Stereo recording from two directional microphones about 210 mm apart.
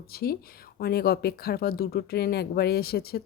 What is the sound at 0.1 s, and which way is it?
Speech, 45° left (ahead or behind).